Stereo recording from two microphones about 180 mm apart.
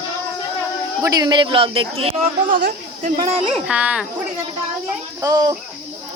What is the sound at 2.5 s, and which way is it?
Speech, 50° right (ahead or behind).